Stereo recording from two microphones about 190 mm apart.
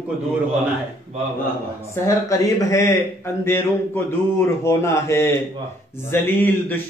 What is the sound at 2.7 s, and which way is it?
Speech, 15° left (ahead or behind).